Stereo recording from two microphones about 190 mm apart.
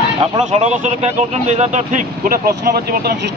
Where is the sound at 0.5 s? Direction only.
35° right (ahead or behind).